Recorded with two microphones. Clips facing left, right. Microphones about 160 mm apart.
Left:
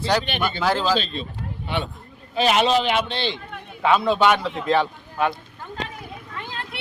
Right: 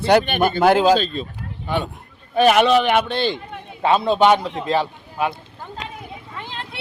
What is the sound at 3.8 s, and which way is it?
Speech, 30° right (ahead or behind).